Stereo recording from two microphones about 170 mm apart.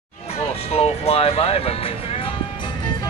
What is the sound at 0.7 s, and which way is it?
Music, 35° left (ahead or behind).